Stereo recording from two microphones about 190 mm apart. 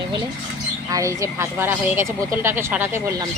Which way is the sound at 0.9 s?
15° right (ahead or behind).